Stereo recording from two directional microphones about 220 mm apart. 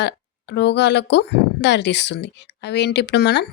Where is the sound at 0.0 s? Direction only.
50° left (ahead or behind).